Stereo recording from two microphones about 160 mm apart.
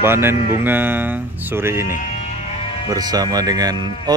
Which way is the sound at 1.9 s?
45° left (ahead or behind).